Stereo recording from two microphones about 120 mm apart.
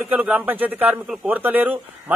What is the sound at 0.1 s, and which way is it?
Speech, 15° right (ahead or behind).